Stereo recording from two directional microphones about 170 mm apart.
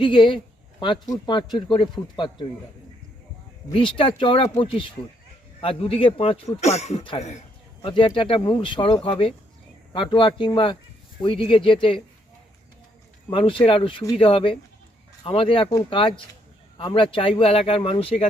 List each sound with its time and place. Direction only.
0.0 s speech: 30° left (ahead or behind)
3.7 s speech: 30° left (ahead or behind)
13.3 s speech: 30° left (ahead or behind)